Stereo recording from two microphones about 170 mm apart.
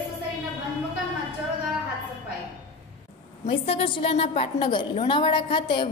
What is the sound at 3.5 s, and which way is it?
A woman's voice, 35° left (ahead or behind).